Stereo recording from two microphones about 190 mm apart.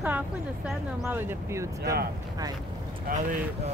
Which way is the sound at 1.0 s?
15° right (ahead or behind).